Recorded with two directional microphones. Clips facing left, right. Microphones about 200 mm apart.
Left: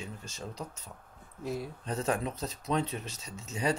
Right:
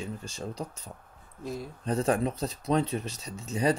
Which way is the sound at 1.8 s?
35° right (ahead or behind).